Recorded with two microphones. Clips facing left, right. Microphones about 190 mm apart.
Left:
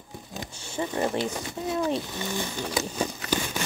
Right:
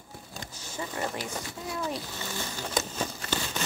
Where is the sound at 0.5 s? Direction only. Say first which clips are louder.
Left 7 dB; 30° left (ahead or behind).